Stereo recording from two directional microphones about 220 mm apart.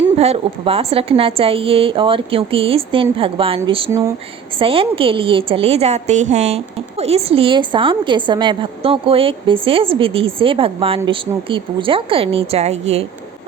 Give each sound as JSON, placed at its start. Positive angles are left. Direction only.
{"t": 0.2, "sound": "a woman's voice", "side_deg": -25}